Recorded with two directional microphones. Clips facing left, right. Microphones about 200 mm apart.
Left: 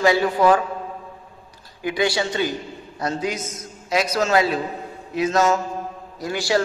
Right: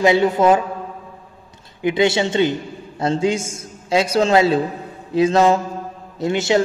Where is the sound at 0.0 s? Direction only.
20° right (ahead or behind).